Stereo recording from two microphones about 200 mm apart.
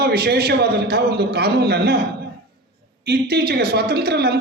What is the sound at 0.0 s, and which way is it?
A man's voice, 55° right (ahead or behind).